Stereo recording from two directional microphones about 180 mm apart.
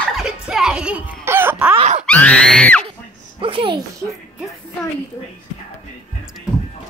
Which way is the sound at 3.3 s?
30° right (ahead or behind).